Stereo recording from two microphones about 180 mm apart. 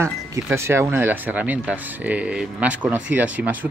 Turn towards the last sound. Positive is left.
turn(degrees=-10)  # may be behind; listen again after turning